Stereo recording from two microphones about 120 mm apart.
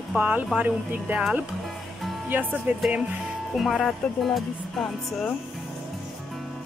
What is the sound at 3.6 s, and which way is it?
Speech, centre (ahead or behind).